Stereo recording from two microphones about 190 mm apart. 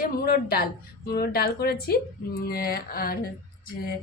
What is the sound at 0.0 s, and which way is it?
Speech, 50° left (ahead or behind).